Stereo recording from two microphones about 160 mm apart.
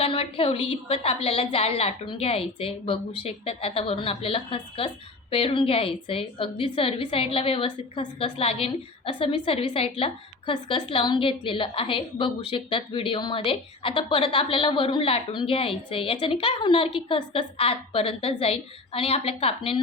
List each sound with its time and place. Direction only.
0.0 s a woman's voice: 35° left (ahead or behind)